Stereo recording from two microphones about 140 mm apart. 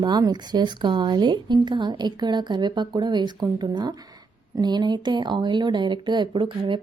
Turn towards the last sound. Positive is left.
turn(degrees=-35)  # may be behind; listen again after turning